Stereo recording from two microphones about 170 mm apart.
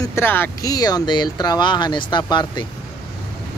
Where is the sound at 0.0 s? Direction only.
15° left (ahead or behind).